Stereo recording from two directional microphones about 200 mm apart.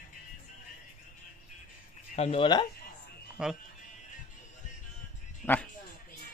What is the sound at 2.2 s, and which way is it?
Speech, 30° left (ahead or behind).